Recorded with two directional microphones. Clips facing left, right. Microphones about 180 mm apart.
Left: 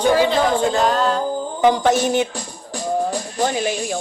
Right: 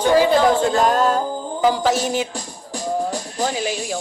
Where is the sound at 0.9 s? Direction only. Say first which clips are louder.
Right 1 dB; 45° right (ahead or behind).